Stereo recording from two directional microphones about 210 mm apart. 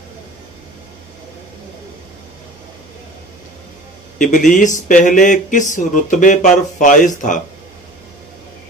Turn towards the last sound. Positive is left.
turn(degrees=35)  # may be behind; listen again after turning